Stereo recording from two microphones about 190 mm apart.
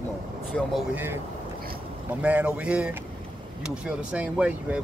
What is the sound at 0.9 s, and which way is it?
Speech, 10° right (ahead or behind).